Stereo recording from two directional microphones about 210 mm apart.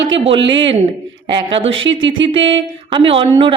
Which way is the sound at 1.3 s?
25° right (ahead or behind).